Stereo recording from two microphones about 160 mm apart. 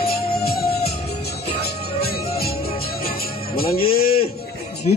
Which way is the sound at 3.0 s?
70° left (ahead or behind).